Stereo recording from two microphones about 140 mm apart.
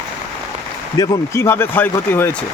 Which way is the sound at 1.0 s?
20° left (ahead or behind).